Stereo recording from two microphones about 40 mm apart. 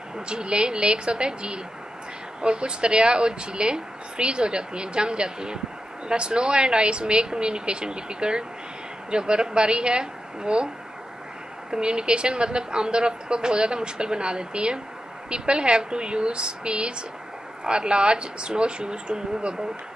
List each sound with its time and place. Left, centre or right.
0.3 s speech: right
11.7 s speech: right